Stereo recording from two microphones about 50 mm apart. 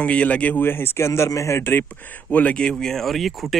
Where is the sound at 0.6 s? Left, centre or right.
Left.